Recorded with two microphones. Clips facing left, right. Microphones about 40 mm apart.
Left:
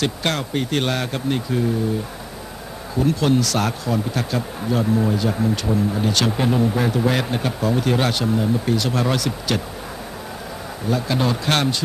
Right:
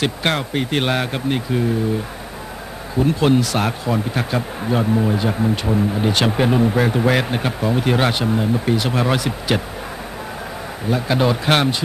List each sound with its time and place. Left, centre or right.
0.0 s speech: right
3.1 s speech: right
10.9 s speech: right